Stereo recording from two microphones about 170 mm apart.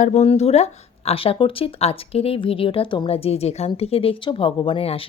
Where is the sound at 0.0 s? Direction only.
40° left (ahead or behind).